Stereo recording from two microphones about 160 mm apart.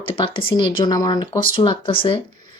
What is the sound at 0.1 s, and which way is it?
Speech, 35° left (ahead or behind).